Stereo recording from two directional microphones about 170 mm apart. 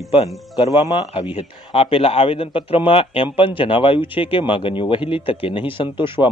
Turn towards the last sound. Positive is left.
turn(degrees=30)  # may be behind; listen again after turning